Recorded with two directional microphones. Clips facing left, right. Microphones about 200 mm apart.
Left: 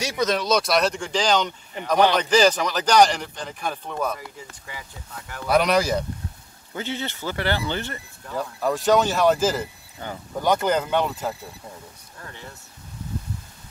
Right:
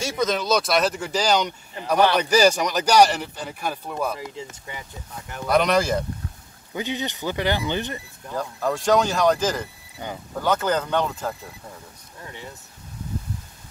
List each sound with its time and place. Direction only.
0.0 s speech: centre (ahead or behind)
4.2 s speech: 25° right (ahead or behind)
5.5 s speech: 5° left (ahead or behind)
6.7 s speech: 15° right (ahead or behind)
8.4 s speech: centre (ahead or behind)
10.0 s speech: 15° right (ahead or behind)
10.4 s speech: 15° left (ahead or behind)
12.2 s speech: 15° right (ahead or behind)